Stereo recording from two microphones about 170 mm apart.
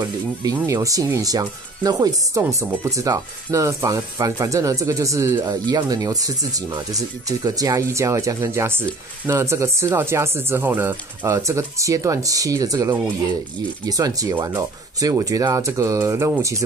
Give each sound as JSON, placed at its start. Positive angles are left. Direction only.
{"t": 0.0, "sound": "speech", "side_deg": -20}